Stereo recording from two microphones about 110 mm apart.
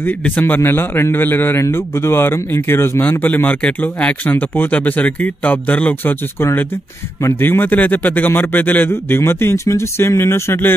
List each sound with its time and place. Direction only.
0.0 s a man's voice: 15° left (ahead or behind)